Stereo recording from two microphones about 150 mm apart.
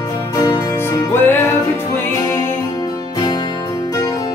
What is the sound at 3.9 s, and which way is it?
Music, 25° left (ahead or behind).